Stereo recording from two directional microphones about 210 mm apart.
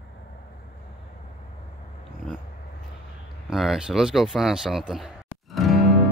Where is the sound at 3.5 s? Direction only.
Centre (ahead or behind).